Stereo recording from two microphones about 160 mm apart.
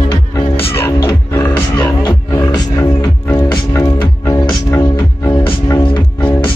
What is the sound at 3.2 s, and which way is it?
Music, 20° left (ahead or behind).